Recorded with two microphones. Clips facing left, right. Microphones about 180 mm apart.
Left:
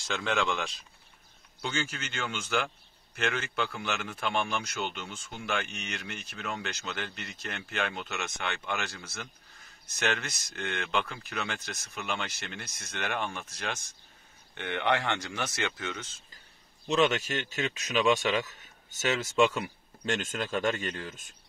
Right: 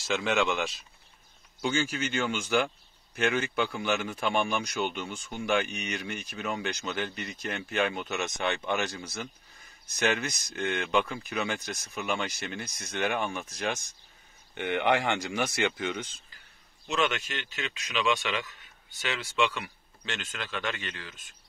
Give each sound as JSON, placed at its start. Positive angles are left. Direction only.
{"t": 0.0, "sound": "a man's voice", "side_deg": -5}
{"t": 16.8, "sound": "speech", "side_deg": 35}